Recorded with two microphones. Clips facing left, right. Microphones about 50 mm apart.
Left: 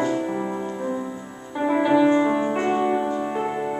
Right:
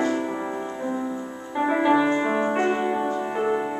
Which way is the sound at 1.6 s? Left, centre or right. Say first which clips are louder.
Left 2 dB; centre.